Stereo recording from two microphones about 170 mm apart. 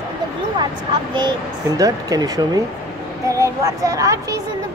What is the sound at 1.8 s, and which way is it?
A child's voice, 20° right (ahead or behind).